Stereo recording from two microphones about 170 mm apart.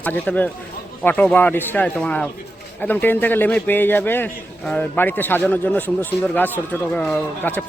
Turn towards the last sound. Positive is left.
turn(degrees=10)  # may be behind; listen again after turning